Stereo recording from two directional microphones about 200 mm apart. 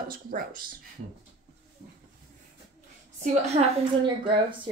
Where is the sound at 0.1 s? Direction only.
45° right (ahead or behind).